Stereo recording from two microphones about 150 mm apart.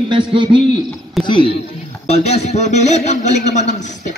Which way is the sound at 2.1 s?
45° left (ahead or behind).